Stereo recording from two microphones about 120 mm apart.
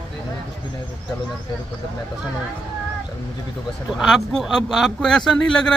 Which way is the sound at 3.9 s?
Centre (ahead or behind).